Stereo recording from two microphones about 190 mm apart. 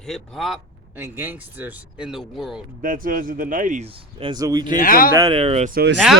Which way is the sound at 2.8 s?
45° right (ahead or behind).